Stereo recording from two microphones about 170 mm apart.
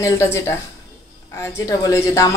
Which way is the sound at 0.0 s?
15° left (ahead or behind).